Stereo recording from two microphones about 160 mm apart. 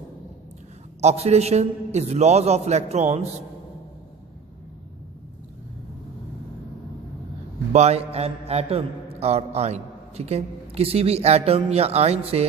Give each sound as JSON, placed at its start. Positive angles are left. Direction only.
{"t": 1.0, "sound": "a man's voice", "side_deg": -40}
{"t": 7.7, "sound": "a man's voice", "side_deg": -40}